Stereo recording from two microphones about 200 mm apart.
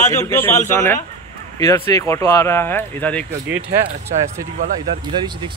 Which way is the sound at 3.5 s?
50° right (ahead or behind).